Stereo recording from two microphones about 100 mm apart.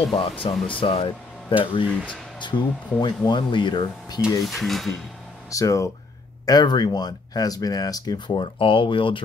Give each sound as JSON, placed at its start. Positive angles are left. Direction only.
{"t": 0.1, "sound": "speech", "side_deg": 60}
{"t": 2.4, "sound": "speech", "side_deg": 50}
{"t": 4.5, "sound": "speech", "side_deg": 0}
{"t": 5.5, "sound": "speech", "side_deg": 35}
{"t": 8.4, "sound": "speech", "side_deg": 60}